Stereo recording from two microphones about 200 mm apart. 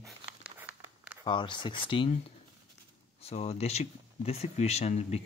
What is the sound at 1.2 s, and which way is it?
Speech, 25° left (ahead or behind).